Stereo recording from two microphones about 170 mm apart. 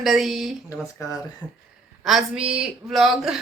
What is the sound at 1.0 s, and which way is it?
Speech, 20° left (ahead or behind).